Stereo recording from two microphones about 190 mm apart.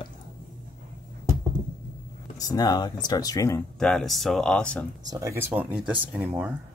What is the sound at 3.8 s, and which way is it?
Speech, centre (ahead or behind).